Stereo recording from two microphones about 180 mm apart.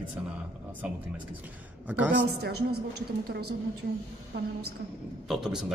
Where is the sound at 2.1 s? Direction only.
60° right (ahead or behind).